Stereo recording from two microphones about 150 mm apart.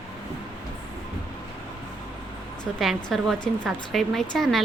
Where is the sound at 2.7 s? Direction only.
Centre (ahead or behind).